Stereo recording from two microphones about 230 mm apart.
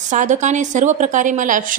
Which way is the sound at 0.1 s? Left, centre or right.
Right.